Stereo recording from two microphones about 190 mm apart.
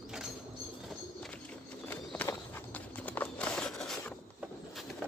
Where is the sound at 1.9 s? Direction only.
10° left (ahead or behind).